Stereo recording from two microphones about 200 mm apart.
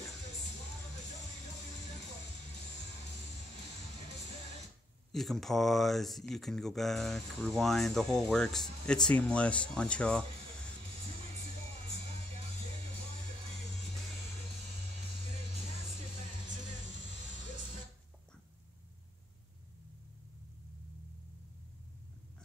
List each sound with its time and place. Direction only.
5.1 s speech: centre (ahead or behind)